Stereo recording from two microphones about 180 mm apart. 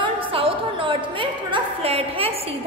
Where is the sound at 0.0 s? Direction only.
30° right (ahead or behind).